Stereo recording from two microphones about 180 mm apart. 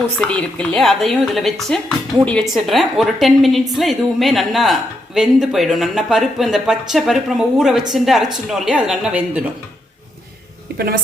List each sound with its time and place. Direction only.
0.2 s a woman's voice: 5° left (ahead or behind)
10.7 s a woman's voice: 60° right (ahead or behind)